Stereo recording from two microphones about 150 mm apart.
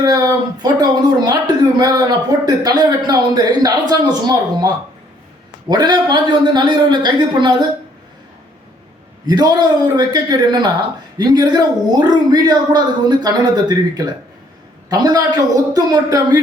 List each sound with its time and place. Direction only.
0.0 s speech: 25° right (ahead or behind)
9.2 s speech: 25° right (ahead or behind)